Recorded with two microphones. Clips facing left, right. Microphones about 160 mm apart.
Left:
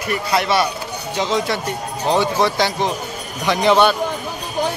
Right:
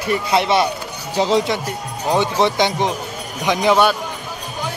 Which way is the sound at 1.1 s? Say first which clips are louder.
Right 4 dB; 35° right (ahead or behind).